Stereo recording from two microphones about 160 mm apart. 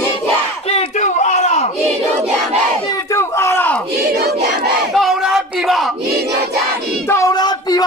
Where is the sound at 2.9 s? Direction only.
20° left (ahead or behind).